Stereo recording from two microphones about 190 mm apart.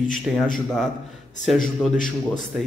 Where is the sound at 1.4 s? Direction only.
Centre (ahead or behind).